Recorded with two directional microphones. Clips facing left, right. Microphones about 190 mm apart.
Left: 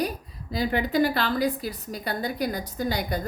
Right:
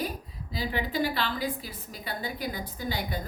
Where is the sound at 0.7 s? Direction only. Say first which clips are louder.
Left 6 dB; 45° left (ahead or behind).